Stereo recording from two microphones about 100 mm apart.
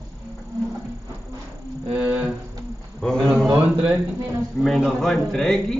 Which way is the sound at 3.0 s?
5° left (ahead or behind).